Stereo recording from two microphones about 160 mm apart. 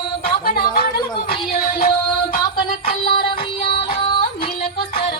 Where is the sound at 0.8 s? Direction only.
75° left (ahead or behind).